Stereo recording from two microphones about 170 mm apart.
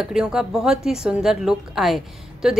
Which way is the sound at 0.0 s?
5° right (ahead or behind).